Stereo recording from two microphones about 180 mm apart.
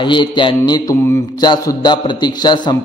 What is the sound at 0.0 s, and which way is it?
A man's voice, 25° left (ahead or behind).